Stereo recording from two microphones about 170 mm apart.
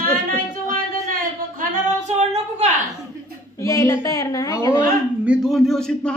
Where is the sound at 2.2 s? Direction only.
40° right (ahead or behind).